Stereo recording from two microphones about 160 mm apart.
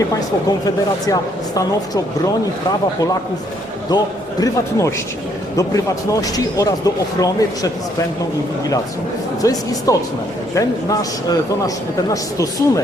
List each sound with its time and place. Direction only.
1.0 s a man's voice: 20° left (ahead or behind)
3.8 s a man's voice: 25° left (ahead or behind)
9.4 s a man's voice: 20° left (ahead or behind)